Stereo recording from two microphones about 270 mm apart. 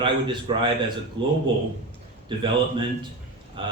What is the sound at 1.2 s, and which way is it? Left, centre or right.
Speech, right.